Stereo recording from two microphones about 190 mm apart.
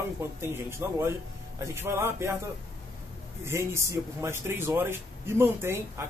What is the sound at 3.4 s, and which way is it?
Speech, 15° right (ahead or behind).